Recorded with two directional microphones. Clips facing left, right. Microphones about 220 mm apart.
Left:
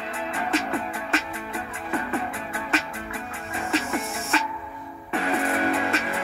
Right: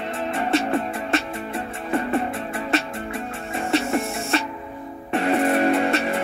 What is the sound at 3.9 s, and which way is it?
Music, 25° right (ahead or behind).